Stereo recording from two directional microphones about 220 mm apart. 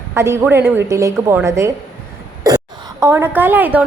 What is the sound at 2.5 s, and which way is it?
Throat clearing, 15° right (ahead or behind).